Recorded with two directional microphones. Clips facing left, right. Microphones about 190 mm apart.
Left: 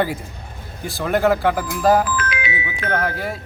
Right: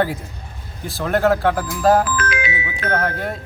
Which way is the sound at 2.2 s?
45° right (ahead or behind).